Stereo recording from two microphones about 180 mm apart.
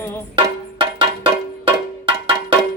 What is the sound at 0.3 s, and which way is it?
Music, 30° right (ahead or behind).